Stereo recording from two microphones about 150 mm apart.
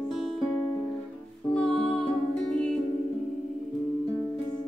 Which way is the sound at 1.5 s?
5° left (ahead or behind).